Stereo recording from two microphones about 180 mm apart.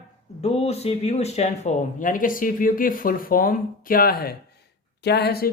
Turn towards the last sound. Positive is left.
turn(degrees=65)  # may be behind; listen again after turning